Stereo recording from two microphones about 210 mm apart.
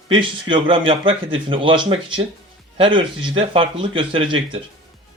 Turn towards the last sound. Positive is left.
turn(degrees=-25)  # may be behind; listen again after turning